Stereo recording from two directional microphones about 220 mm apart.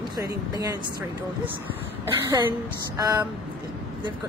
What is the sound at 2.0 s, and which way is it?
Speech, 15° right (ahead or behind).